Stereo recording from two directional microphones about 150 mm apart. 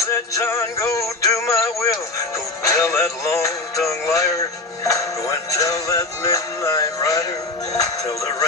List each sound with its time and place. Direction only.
0.1 s music: 20° left (ahead or behind)